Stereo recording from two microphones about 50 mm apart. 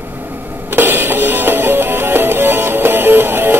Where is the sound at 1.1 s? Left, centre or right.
Right.